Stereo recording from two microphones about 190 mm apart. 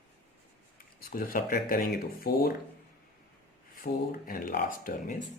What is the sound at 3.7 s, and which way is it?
A man's voice, 50° left (ahead or behind).